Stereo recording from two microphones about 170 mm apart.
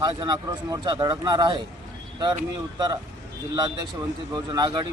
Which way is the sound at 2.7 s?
25° right (ahead or behind).